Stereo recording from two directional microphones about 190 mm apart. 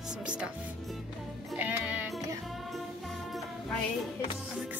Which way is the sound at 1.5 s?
5° right (ahead or behind).